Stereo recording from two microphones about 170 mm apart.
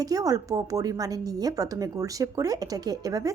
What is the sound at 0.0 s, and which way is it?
Speech, 20° right (ahead or behind).